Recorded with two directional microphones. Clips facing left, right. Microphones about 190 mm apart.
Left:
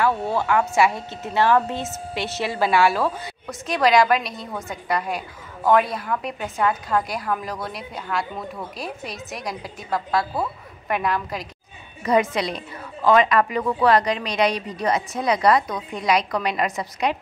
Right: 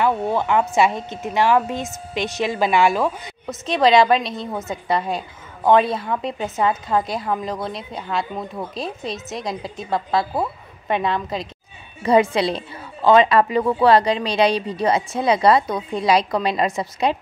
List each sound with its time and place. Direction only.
0.0 s a woman's voice: 20° right (ahead or behind)